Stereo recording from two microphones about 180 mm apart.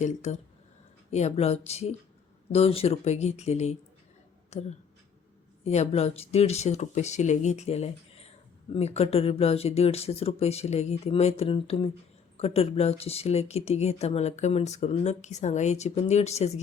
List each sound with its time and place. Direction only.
0.0 s speech: 40° left (ahead or behind)